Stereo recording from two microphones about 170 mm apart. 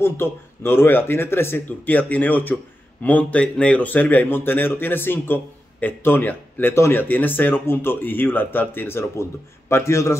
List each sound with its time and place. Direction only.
0.0 s speech: 15° left (ahead or behind)